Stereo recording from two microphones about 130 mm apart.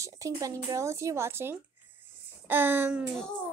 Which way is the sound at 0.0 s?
25° right (ahead or behind).